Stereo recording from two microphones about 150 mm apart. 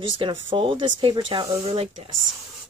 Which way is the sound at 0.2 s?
35° right (ahead or behind).